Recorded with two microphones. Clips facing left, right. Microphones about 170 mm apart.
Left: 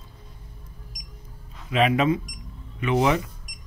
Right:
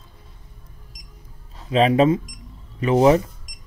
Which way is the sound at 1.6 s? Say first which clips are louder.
Right 5 dB; 35° right (ahead or behind).